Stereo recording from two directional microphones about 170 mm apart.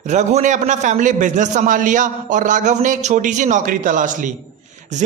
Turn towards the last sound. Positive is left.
turn(degrees=-45)  # may be behind; listen again after turning